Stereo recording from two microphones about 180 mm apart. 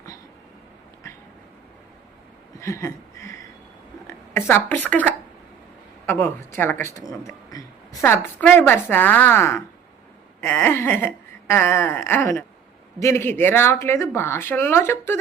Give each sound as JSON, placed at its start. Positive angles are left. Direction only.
{"t": 2.6, "sound": "a sound", "side_deg": 15}
{"t": 4.0, "sound": "speech", "side_deg": 15}
{"t": 8.0, "sound": "speech", "side_deg": 10}